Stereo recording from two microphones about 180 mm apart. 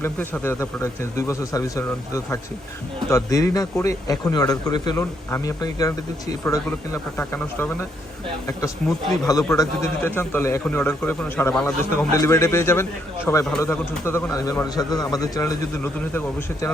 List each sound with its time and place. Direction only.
0.0 s a man's voice: 15° left (ahead or behind)
9.5 s a man's voice: 15° left (ahead or behind)